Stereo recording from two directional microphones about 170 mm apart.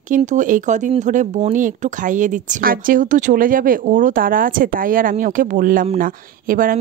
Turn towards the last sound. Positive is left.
turn(degrees=-55)  # may be behind; listen again after turning